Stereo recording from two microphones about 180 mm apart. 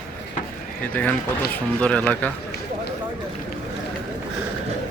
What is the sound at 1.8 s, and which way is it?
Speech, 5° left (ahead or behind).